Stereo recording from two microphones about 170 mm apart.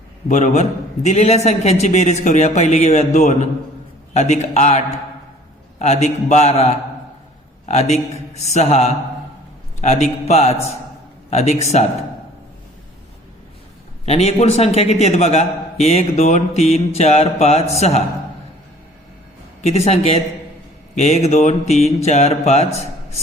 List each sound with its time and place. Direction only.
0.3 s a man's voice: 45° left (ahead or behind)
5.8 s a man's voice: 40° left (ahead or behind)
14.0 s a man's voice: 40° left (ahead or behind)
19.6 s a man's voice: 40° left (ahead or behind)